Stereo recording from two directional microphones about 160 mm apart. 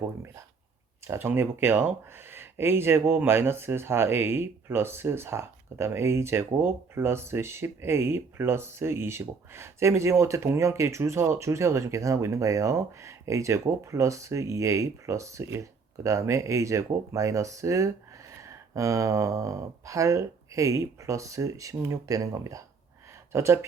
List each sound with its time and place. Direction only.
1.0 s speech: 15° right (ahead or behind)